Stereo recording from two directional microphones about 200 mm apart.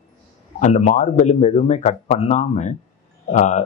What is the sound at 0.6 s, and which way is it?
Speech, 35° left (ahead or behind).